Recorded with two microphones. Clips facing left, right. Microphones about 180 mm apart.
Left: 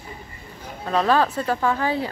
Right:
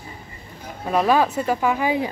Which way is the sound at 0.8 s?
10° right (ahead or behind).